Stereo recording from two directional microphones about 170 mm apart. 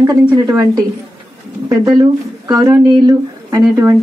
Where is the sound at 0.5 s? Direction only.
20° right (ahead or behind).